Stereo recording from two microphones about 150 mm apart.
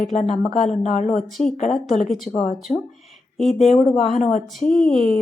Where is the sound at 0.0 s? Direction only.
60° left (ahead or behind).